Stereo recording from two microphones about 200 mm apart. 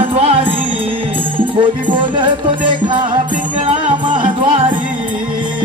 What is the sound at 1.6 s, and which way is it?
Music, 25° right (ahead or behind).